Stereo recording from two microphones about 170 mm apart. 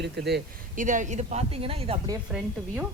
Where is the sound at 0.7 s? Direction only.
50° right (ahead or behind).